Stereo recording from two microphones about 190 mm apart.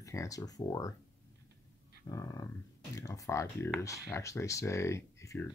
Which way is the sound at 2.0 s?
15° left (ahead or behind).